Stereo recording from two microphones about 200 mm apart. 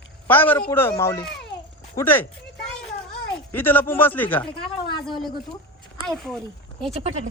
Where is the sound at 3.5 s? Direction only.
10° left (ahead or behind).